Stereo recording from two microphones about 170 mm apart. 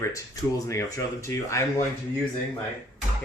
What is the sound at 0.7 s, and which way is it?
Speech, 20° left (ahead or behind).